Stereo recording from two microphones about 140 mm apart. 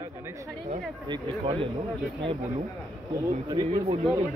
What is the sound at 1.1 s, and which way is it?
Speech, 40° right (ahead or behind).